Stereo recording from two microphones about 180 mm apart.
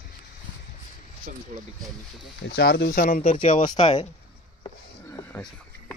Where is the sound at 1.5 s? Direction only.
40° right (ahead or behind).